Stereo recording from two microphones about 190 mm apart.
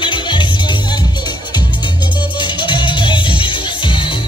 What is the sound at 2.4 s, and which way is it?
Music, 25° left (ahead or behind).